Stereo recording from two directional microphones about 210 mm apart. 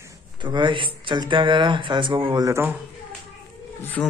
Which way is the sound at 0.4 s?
20° right (ahead or behind).